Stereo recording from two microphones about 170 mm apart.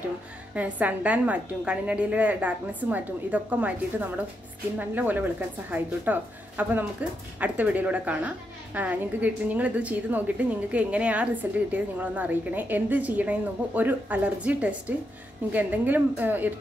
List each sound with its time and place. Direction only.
0.6 s a woman's voice: 10° right (ahead or behind)